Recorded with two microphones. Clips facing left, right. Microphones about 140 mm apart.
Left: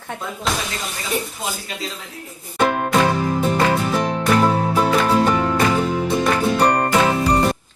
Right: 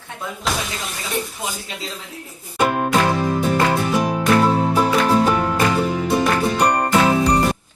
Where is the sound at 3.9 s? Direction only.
10° right (ahead or behind).